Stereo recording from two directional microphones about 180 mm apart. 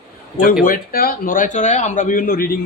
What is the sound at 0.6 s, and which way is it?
A man's voice, 55° left (ahead or behind).